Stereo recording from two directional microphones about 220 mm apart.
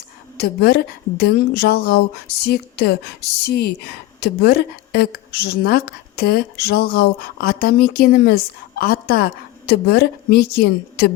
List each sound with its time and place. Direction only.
0.3 s a woman's voice: 45° left (ahead or behind)